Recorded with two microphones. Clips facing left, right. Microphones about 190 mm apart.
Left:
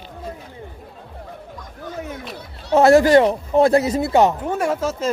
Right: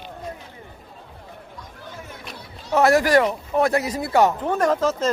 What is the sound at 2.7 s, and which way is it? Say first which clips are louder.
Speech: left 5 dB; 25° left (ahead or behind).